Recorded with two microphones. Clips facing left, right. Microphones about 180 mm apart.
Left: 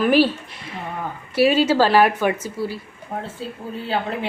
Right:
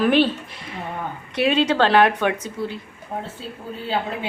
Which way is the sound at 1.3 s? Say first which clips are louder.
Left 3 dB; 5° left (ahead or behind).